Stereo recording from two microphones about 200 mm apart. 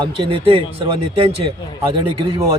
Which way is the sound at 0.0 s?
25° right (ahead or behind).